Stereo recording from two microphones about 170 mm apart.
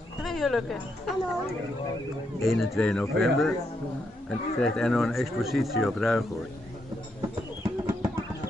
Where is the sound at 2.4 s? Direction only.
Centre (ahead or behind).